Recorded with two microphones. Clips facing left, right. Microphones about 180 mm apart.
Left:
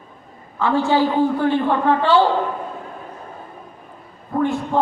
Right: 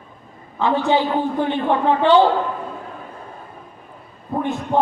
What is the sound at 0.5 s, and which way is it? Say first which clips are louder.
A man's voice: even; 20° right (ahead or behind).